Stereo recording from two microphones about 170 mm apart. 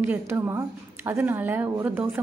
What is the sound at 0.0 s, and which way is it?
Speech, 15° right (ahead or behind).